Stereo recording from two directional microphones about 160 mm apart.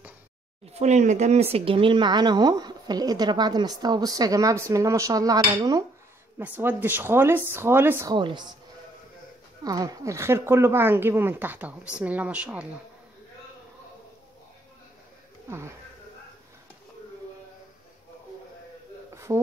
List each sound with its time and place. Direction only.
0.7 s speech: 45° right (ahead or behind); by 5.9 s 25° right (ahead or behind)
6.3 s speech: 10° right (ahead or behind)
8.1 s speech: 30° right (ahead or behind)
9.7 s speech: 20° right (ahead or behind)
19.1 s a sound: 15° right (ahead or behind)